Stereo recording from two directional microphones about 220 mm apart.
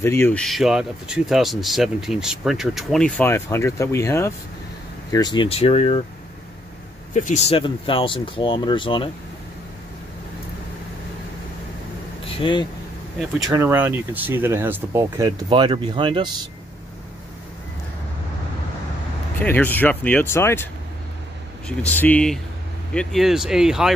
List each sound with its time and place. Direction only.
0.0 s speech: 10° left (ahead or behind); by 6.0 s 25° left (ahead or behind)
7.2 s speech: 30° left (ahead or behind)
12.4 s speech: 25° left (ahead or behind)
13.4 s speech: 15° right (ahead or behind)
19.4 s speech: 10° left (ahead or behind)
21.6 s speech: 5° left (ahead or behind)